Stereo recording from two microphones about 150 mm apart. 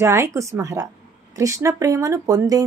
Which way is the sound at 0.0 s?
20° right (ahead or behind).